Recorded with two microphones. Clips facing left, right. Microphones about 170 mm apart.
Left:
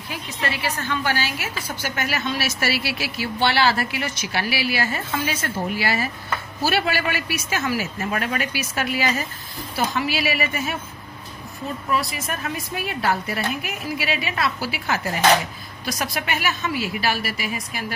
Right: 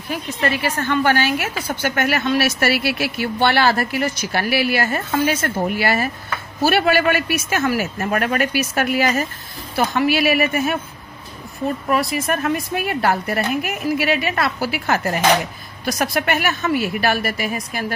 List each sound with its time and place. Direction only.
0.1 s a woman's voice: 50° right (ahead or behind)
11.9 s a woman's voice: 55° right (ahead or behind)